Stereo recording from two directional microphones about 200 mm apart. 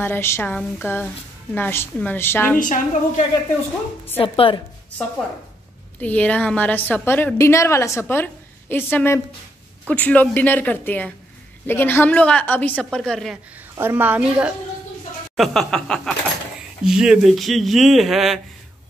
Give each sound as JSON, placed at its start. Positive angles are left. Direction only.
{"t": 0.0, "sound": "a woman's voice", "side_deg": 10}
{"t": 2.6, "sound": "a woman's voice", "side_deg": 40}
{"t": 4.2, "sound": "a woman's voice", "side_deg": 25}
{"t": 5.9, "sound": "a woman's voice", "side_deg": 5}
{"t": 13.7, "sound": "a woman's voice", "side_deg": -10}